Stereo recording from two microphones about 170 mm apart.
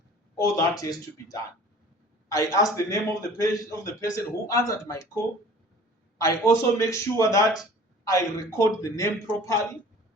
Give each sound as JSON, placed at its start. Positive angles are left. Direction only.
{"t": 0.3, "sound": "a man's voice", "side_deg": 20}
{"t": 6.1, "sound": "a man's voice", "side_deg": 20}